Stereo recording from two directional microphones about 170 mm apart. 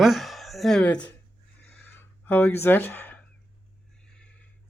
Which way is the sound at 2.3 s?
10° left (ahead or behind).